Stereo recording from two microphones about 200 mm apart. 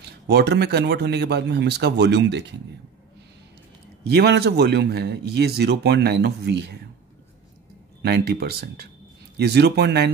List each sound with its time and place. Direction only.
0.3 s speech: 55° right (ahead or behind)
4.0 s speech: 55° right (ahead or behind)
8.0 s speech: 50° right (ahead or behind)